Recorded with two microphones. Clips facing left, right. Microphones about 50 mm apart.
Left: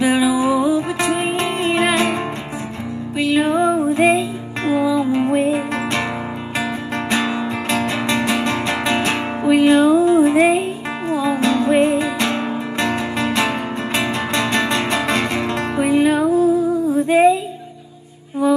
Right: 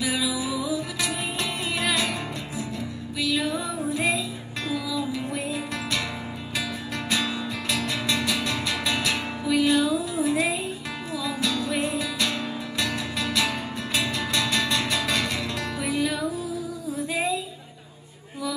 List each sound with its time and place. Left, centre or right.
0.0 s music: left
3.2 s music: left
7.1 s music: left